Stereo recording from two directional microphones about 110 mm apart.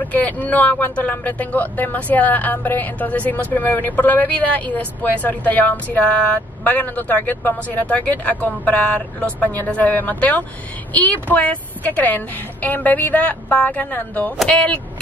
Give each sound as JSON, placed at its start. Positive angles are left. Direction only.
{"t": 0.0, "sound": "speech", "side_deg": 15}